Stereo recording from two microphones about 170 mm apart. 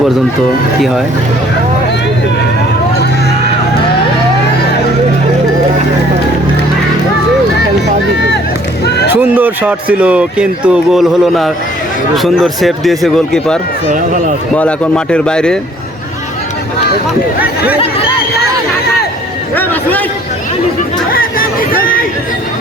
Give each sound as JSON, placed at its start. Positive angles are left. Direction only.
{"t": 9.1, "sound": "speech", "side_deg": -10}
{"t": 21.1, "sound": "chatter", "side_deg": 55}